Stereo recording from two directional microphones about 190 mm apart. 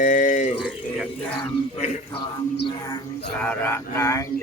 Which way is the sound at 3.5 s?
15° left (ahead or behind).